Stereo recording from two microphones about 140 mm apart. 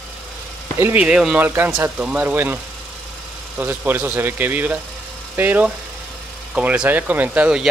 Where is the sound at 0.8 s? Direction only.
10° right (ahead or behind).